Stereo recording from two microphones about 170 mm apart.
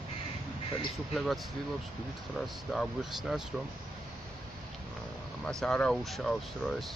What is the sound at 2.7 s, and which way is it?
Speech, centre (ahead or behind).